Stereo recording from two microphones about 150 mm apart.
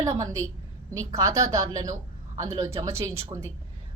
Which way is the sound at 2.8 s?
20° right (ahead or behind).